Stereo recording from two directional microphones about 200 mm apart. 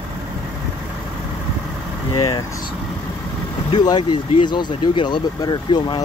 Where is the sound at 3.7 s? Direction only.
20° left (ahead or behind).